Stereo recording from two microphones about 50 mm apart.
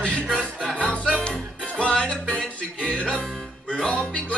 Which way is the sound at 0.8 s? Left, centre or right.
Left.